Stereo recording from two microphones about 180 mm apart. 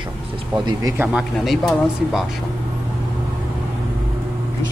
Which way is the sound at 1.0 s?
Centre (ahead or behind).